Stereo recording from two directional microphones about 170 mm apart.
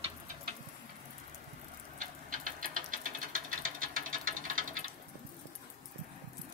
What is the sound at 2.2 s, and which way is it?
Ratchet, 50° right (ahead or behind).